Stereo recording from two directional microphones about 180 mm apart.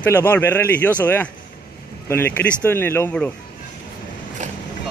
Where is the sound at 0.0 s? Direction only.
10° left (ahead or behind).